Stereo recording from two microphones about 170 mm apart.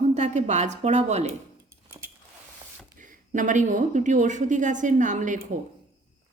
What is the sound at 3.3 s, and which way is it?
Speech, 50° right (ahead or behind).